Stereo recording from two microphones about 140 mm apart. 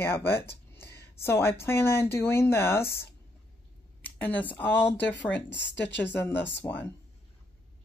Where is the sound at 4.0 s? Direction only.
10° left (ahead or behind).